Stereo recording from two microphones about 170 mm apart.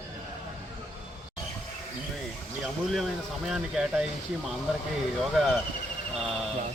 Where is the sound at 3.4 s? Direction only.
5° right (ahead or behind).